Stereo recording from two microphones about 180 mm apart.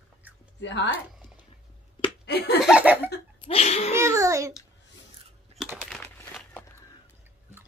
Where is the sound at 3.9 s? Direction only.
15° right (ahead or behind).